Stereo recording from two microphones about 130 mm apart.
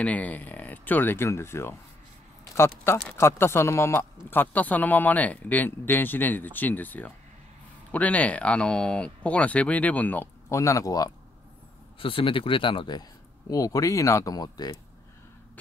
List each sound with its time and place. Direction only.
0.0 s speech: 10° left (ahead or behind); by 11.1 s 25° left (ahead or behind)
12.0 s speech: 40° left (ahead or behind)
13.5 s speech: 25° left (ahead or behind)